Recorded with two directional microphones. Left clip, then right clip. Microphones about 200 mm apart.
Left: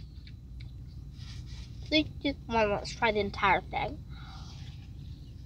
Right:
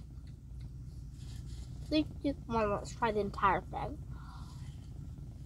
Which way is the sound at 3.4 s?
20° left (ahead or behind).